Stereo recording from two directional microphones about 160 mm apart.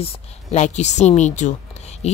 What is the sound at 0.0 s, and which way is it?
A woman's voice, 45° left (ahead or behind).